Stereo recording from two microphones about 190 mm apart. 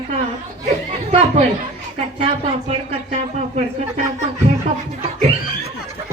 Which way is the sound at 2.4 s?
35° right (ahead or behind).